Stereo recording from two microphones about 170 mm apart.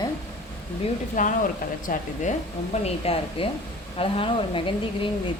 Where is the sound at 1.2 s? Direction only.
50° left (ahead or behind).